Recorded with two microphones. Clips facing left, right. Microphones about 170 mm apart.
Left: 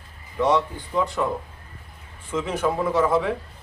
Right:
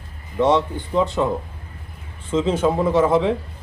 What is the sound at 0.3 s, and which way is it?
Speech, 25° right (ahead or behind).